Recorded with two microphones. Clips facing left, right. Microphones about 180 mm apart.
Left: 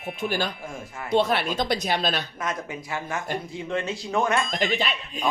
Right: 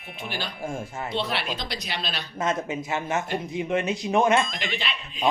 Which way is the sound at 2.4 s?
25° right (ahead or behind).